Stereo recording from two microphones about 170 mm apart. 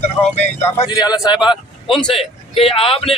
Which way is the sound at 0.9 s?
25° left (ahead or behind).